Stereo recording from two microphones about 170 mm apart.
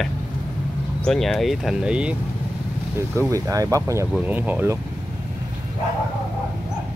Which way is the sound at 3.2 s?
20° right (ahead or behind).